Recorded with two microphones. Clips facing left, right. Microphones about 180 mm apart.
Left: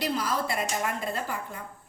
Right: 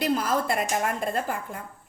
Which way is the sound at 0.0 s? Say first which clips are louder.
Right 4 dB; 50° right (ahead or behind).